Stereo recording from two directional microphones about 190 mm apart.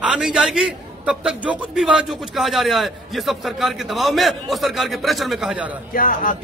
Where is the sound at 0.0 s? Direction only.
5° right (ahead or behind).